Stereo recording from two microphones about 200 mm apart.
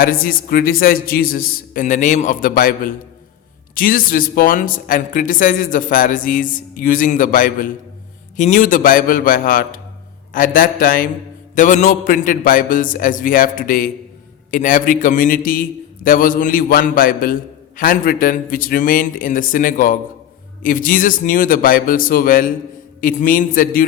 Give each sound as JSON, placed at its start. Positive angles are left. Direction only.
{"t": 0.0, "sound": "speech", "side_deg": 45}